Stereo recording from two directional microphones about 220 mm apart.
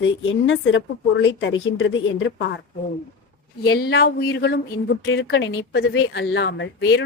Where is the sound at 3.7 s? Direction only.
45° left (ahead or behind).